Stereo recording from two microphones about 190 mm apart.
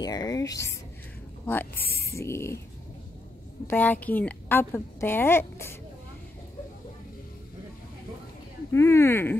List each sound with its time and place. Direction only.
0.0 s a woman's voice: 20° left (ahead or behind)
3.6 s a woman's voice: 10° left (ahead or behind)
8.7 s a woman's voice: 15° left (ahead or behind)